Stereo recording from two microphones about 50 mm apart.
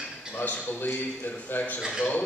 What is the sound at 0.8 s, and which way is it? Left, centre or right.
A man's voice, left.